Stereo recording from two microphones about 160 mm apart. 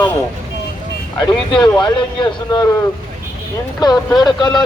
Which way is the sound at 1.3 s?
25° left (ahead or behind).